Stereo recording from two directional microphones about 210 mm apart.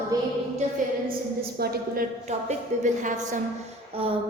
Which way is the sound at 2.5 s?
35° right (ahead or behind).